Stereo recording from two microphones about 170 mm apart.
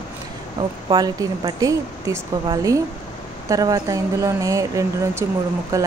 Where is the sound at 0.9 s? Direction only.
20° right (ahead or behind).